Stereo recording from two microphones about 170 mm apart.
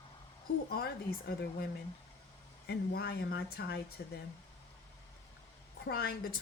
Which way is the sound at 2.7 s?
70° left (ahead or behind).